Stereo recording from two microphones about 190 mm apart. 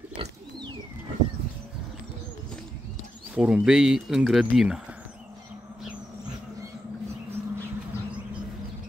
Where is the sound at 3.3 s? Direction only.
5° right (ahead or behind).